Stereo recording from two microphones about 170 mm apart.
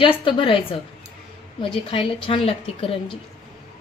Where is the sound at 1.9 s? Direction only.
30° left (ahead or behind).